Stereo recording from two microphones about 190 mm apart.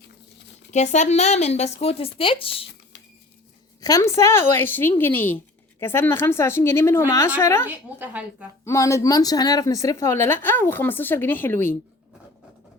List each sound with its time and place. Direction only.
0.7 s speech: 35° left (ahead or behind)
3.8 s speech: 20° left (ahead or behind)
7.7 s a woman's voice: 10° right (ahead or behind)
8.6 s speech: 15° left (ahead or behind)